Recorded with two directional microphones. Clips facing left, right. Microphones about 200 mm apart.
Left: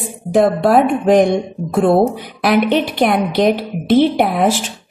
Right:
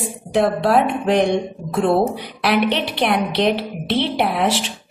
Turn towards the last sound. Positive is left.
turn(degrees=45)  # may be behind; listen again after turning